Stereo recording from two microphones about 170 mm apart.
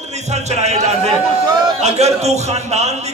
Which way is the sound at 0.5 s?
40° right (ahead or behind).